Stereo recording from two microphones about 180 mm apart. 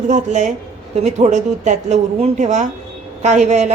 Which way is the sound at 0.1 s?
40° right (ahead or behind).